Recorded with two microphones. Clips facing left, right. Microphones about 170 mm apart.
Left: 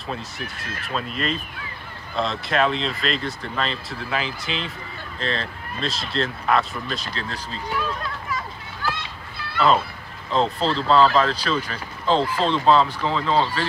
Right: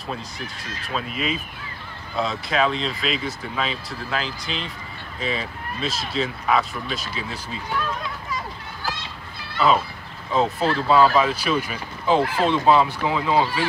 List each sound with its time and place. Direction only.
0.1 s speech: 5° left (ahead or behind)
8.8 s a sound: 55° left (ahead or behind)
10.3 s speech: 10° right (ahead or behind)